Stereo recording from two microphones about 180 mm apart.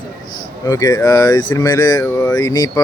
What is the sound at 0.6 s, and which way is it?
Speech, 20° left (ahead or behind).